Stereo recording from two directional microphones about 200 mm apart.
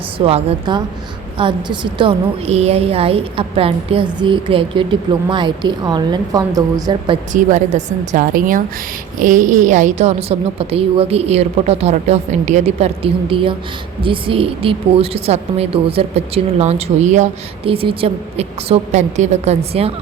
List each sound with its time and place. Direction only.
0.3 s a woman's voice: 25° right (ahead or behind)
7.3 s a woman's voice: 35° right (ahead or behind)